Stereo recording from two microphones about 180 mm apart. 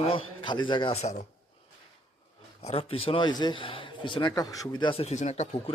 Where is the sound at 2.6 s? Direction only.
35° left (ahead or behind).